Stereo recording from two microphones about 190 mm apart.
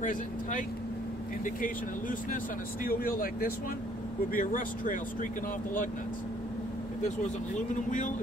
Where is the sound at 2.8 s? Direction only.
50° left (ahead or behind).